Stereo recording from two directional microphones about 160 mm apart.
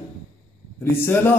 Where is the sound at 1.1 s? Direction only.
15° left (ahead or behind).